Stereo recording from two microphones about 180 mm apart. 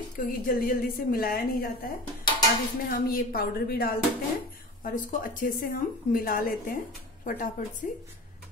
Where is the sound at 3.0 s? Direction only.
55° left (ahead or behind).